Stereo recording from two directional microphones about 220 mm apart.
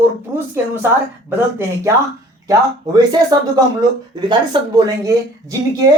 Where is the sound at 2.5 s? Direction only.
20° right (ahead or behind).